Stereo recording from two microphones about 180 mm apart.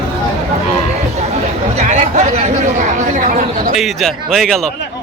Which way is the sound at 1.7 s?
40° right (ahead or behind).